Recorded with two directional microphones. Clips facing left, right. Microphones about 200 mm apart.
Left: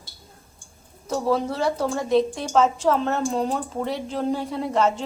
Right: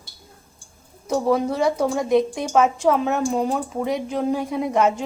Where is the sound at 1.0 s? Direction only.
15° right (ahead or behind).